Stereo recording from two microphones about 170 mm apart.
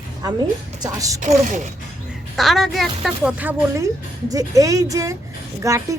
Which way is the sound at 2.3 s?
Centre (ahead or behind).